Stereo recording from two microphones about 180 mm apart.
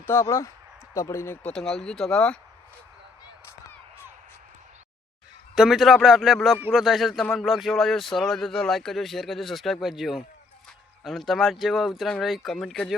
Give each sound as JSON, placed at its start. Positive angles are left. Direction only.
{"t": 0.0, "sound": "speech", "side_deg": 15}
{"t": 5.5, "sound": "speech", "side_deg": 0}